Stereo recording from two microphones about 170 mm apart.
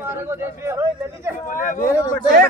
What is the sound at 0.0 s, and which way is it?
Speech, 15° right (ahead or behind).